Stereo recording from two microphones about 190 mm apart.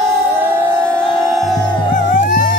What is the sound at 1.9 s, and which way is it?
Music, 40° left (ahead or behind).